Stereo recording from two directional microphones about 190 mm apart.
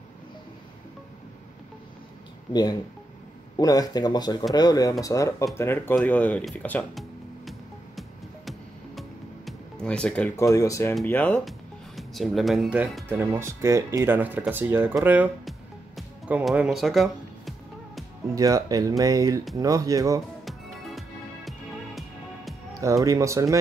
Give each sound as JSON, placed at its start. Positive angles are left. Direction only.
{"t": 2.5, "sound": "speech", "side_deg": 20}
{"t": 9.5, "sound": "music", "side_deg": 5}
{"t": 10.3, "sound": "speech", "side_deg": 15}
{"t": 16.0, "sound": "music", "side_deg": -5}
{"t": 18.3, "sound": "speech", "side_deg": -20}
{"t": 21.5, "sound": "music", "side_deg": 0}
{"t": 22.8, "sound": "speech", "side_deg": -15}